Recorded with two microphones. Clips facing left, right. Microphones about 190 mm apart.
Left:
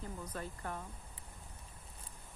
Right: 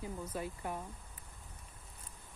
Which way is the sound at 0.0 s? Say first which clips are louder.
Right 3 dB; 10° right (ahead or behind).